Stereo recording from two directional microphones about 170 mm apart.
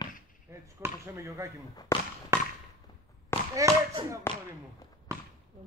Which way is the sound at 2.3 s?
15° right (ahead or behind).